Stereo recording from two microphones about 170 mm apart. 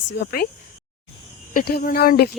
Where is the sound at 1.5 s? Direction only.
60° left (ahead or behind).